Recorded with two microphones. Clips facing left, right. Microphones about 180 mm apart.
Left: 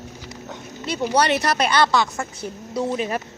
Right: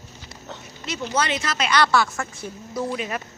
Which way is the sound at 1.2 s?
65° left (ahead or behind).